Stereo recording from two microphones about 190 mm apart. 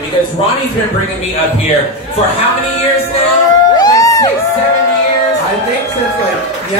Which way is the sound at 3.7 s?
20° left (ahead or behind).